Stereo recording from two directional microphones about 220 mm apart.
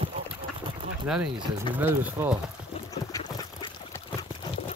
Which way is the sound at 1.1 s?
5° right (ahead or behind).